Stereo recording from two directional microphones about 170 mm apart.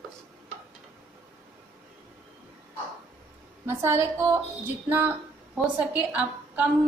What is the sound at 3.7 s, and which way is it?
A woman's voice, 15° right (ahead or behind).